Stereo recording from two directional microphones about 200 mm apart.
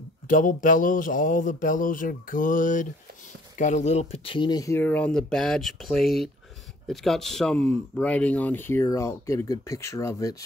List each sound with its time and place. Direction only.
0.3 s speech: 40° left (ahead or behind); by 10.3 s 15° left (ahead or behind)